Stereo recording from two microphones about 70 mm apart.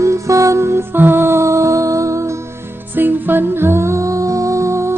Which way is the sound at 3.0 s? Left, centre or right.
Right.